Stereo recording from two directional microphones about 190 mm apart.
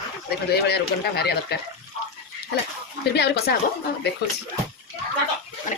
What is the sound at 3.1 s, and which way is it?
Speech, 60° left (ahead or behind).